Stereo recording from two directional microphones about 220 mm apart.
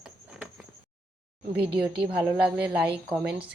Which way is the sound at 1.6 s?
5° right (ahead or behind).